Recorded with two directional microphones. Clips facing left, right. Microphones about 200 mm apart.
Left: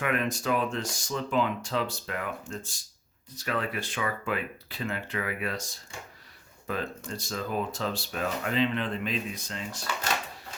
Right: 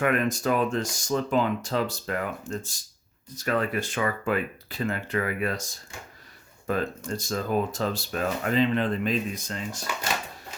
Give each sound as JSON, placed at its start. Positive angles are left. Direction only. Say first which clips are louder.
{"t": 0.0, "sound": "speech", "louder": "right 5 dB", "side_deg": -45}
{"t": 6.7, "sound": "speech", "louder": "right 5 dB", "side_deg": -45}